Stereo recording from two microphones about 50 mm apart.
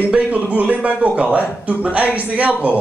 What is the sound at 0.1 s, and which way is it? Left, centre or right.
A man's voice, right.